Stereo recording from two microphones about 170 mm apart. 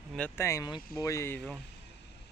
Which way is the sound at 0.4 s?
20° left (ahead or behind).